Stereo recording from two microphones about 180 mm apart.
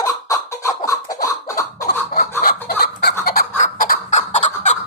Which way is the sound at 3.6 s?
50° left (ahead or behind).